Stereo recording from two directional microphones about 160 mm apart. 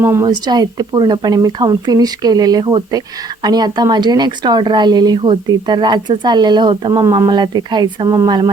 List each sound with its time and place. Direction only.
0.0 s speech: 15° right (ahead or behind)